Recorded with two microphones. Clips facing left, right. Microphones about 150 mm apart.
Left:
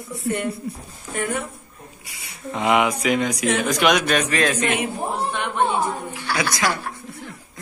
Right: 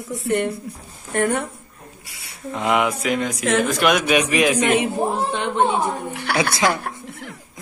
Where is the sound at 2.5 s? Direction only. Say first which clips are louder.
Left 1 dB; 5° left (ahead or behind); by 5.6 s 20° right (ahead or behind).